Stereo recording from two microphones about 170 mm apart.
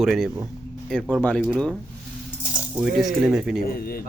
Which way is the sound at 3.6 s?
60° left (ahead or behind).